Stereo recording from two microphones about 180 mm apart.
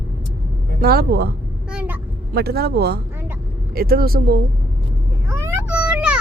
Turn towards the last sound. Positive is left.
turn(degrees=-5)  # may be behind; listen again after turning